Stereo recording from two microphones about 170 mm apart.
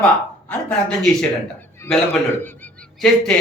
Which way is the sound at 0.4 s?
5° left (ahead or behind).